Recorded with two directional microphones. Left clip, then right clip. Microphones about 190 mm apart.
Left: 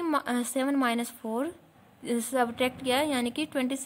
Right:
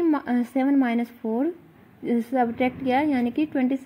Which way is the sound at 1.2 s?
30° left (ahead or behind).